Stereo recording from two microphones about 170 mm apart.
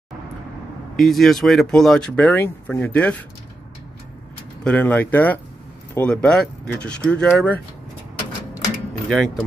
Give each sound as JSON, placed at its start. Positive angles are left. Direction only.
{"t": 0.9, "sound": "speech", "side_deg": 0}
{"t": 4.6, "sound": "speech", "side_deg": 10}
{"t": 9.1, "sound": "speech", "side_deg": 5}